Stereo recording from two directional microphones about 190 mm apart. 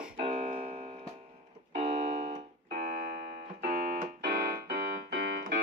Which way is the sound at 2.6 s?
50° right (ahead or behind).